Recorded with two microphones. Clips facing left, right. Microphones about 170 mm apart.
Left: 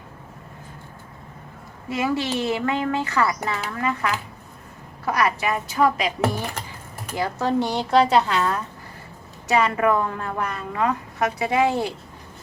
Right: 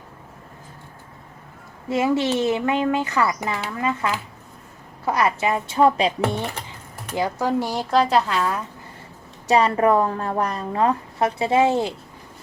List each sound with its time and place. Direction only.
1.9 s speech: 25° right (ahead or behind)
7.2 s speech: 10° right (ahead or behind)
9.5 s a woman's voice: 35° right (ahead or behind)